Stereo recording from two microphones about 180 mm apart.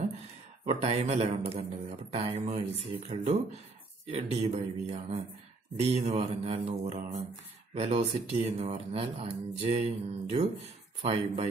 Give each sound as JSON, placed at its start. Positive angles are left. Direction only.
{"t": 0.7, "sound": "speech", "side_deg": -35}